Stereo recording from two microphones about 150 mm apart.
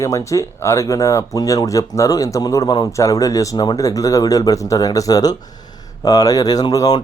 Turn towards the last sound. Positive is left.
turn(degrees=25)  # may be behind; listen again after turning